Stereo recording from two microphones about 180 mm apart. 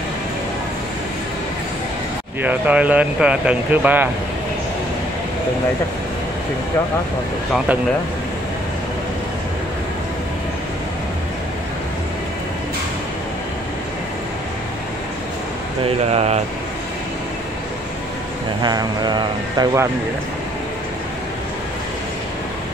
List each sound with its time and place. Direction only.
2.4 s speech: 10° right (ahead or behind)
7.5 s speech: 10° right (ahead or behind)
15.8 s speech: 35° right (ahead or behind)
18.6 s speech: 25° right (ahead or behind)